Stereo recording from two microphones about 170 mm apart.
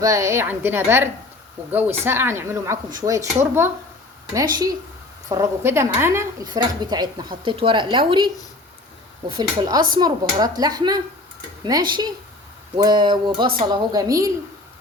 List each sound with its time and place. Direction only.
0.0 s speech: 20° right (ahead or behind)
5.3 s a woman's voice: 15° right (ahead or behind)
9.3 s a woman's voice: 25° right (ahead or behind)